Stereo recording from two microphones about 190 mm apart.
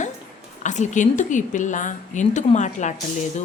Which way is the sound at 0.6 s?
40° left (ahead or behind).